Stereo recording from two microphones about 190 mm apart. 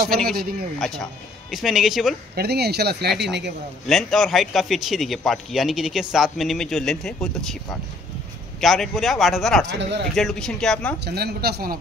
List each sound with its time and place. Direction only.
0.2 s a man's voice: centre (ahead or behind)
2.3 s speech: 60° right (ahead or behind)
3.8 s a man's voice: centre (ahead or behind)
8.5 s a man's voice: centre (ahead or behind)
9.7 s speech: 65° right (ahead or behind)
10.1 s a man's voice: centre (ahead or behind)
11.1 s speech: 55° right (ahead or behind)